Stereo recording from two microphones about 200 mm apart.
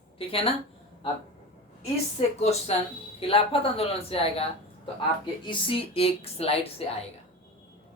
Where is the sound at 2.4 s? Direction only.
30° left (ahead or behind).